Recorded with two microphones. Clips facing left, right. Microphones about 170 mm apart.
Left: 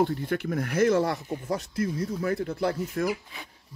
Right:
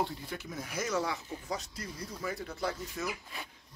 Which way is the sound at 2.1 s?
60° left (ahead or behind).